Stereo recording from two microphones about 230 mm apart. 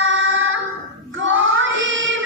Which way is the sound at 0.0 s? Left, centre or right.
Right.